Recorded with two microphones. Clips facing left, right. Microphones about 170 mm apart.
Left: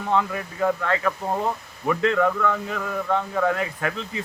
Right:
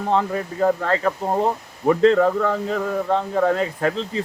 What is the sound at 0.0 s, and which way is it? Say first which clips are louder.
Speech: right 3 dB; 35° right (ahead or behind).